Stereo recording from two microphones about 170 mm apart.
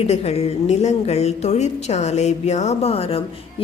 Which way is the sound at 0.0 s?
40° left (ahead or behind).